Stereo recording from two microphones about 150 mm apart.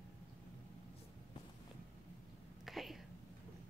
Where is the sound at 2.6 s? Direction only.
Centre (ahead or behind).